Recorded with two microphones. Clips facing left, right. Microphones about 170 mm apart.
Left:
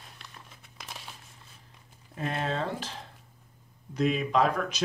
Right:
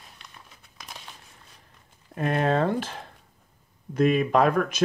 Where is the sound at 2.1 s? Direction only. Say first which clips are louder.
Right 8 dB; 55° right (ahead or behind).